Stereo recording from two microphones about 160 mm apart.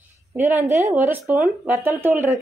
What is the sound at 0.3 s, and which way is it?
A woman's voice, 15° right (ahead or behind).